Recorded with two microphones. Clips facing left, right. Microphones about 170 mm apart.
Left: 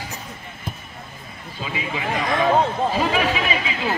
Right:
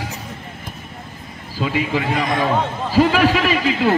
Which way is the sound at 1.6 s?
70° right (ahead or behind).